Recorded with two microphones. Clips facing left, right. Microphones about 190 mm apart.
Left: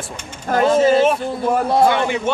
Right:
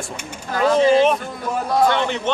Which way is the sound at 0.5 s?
50° left (ahead or behind).